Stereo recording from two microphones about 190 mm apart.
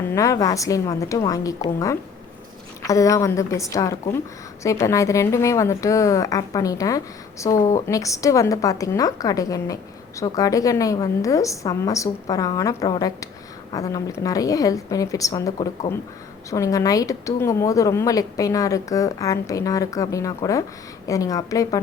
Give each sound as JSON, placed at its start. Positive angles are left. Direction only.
{"t": 0.1, "sound": "speech", "side_deg": 15}